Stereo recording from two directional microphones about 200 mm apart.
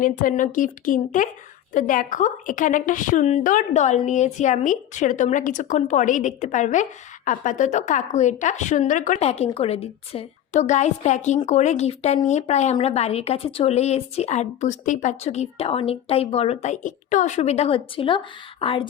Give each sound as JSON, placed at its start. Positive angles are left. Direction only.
{"t": 0.0, "sound": "a woman's voice", "side_deg": 40}